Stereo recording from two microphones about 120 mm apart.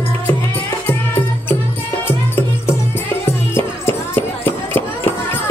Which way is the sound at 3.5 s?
20° left (ahead or behind).